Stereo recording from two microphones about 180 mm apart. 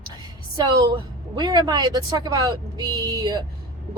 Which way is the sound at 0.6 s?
25° right (ahead or behind).